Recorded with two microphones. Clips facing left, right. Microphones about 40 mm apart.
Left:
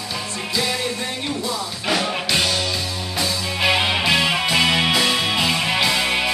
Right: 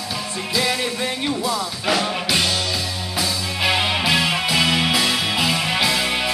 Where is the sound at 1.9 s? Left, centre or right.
Centre.